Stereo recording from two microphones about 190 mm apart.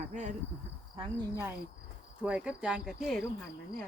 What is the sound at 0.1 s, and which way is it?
Speech, 40° right (ahead or behind).